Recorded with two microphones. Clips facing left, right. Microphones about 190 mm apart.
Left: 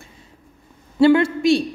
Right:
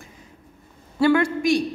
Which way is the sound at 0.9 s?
25° left (ahead or behind).